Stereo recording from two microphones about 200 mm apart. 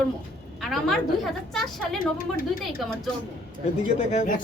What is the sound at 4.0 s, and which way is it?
Speech, 35° left (ahead or behind).